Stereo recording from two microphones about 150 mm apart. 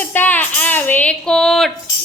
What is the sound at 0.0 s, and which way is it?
Speech, 10° left (ahead or behind).